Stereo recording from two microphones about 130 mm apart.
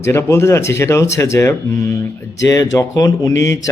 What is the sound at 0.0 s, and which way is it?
Speech, 20° left (ahead or behind).